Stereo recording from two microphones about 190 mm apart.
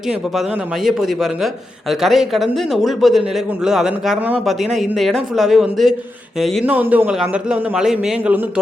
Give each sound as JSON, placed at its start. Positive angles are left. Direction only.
{"t": 0.9, "sound": "speech", "side_deg": 0}